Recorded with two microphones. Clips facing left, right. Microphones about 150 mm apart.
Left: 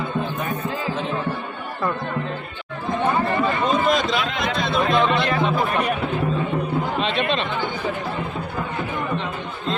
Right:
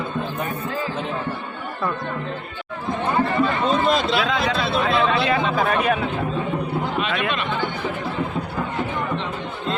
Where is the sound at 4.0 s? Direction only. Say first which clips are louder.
Right 2 dB; 5° right (ahead or behind).